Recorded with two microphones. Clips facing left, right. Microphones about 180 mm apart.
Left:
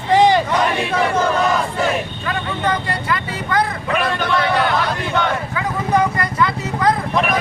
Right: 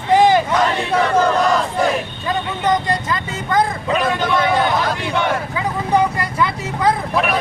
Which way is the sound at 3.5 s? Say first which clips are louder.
Right 2 dB; 25° right (ahead or behind).